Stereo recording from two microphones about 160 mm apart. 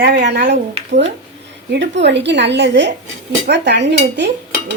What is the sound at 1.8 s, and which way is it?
A woman's voice, 90° right.